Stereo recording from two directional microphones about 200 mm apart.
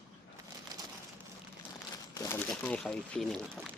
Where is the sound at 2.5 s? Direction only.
5° left (ahead or behind).